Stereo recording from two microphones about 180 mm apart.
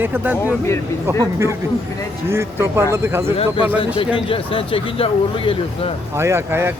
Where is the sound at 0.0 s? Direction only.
10° right (ahead or behind).